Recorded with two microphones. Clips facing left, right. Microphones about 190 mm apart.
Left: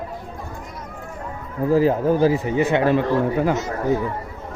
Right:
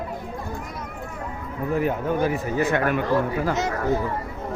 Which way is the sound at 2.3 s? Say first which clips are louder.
Left 3 dB; 20° left (ahead or behind).